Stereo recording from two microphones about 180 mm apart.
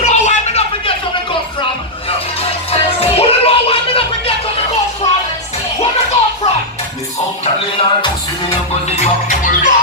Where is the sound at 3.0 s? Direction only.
35° left (ahead or behind).